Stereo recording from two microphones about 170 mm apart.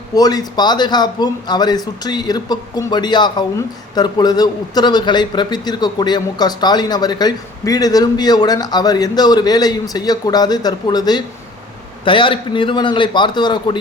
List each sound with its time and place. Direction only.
0.1 s a man's voice: 20° left (ahead or behind)